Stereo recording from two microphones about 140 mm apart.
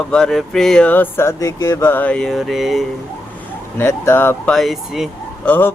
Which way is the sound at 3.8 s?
15° left (ahead or behind).